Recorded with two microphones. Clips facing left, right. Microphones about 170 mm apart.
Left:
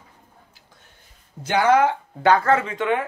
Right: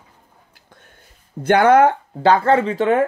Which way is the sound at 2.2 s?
30° right (ahead or behind).